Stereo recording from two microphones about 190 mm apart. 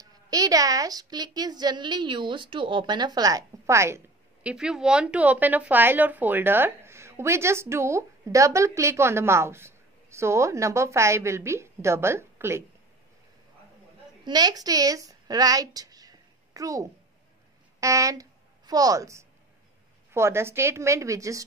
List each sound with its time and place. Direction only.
0.0 s a woman's voice: 20° right (ahead or behind)
14.2 s a woman's voice: 20° right (ahead or behind)